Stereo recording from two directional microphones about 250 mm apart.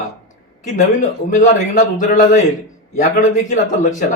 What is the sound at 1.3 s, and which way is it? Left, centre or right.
A man's voice, left.